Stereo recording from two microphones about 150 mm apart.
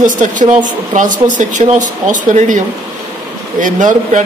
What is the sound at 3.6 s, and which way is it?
Speech, 55° right (ahead or behind).